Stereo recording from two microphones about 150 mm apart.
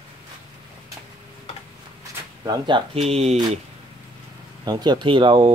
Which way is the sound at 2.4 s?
30° right (ahead or behind).